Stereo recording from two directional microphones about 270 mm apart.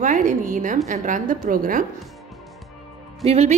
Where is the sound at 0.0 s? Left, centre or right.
Right.